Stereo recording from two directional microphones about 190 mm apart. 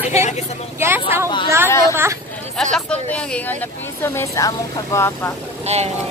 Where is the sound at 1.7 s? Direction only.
15° left (ahead or behind).